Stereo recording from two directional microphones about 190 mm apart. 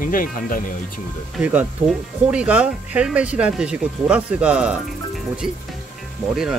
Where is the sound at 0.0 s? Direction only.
45° left (ahead or behind).